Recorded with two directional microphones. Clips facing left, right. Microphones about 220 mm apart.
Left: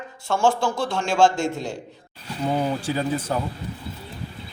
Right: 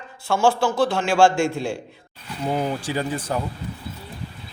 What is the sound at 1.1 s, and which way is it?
Speech, 20° left (ahead or behind).